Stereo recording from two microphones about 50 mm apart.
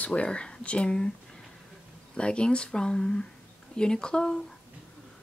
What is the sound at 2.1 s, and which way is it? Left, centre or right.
Speech, centre.